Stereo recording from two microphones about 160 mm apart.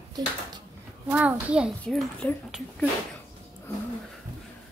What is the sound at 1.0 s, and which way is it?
Speech, 10° right (ahead or behind).